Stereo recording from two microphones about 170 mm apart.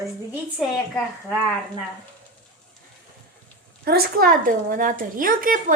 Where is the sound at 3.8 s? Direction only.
60° right (ahead or behind).